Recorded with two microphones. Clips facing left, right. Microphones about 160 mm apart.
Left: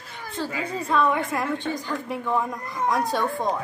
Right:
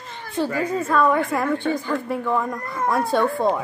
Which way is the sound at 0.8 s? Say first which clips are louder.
Right 2 dB; centre (ahead or behind).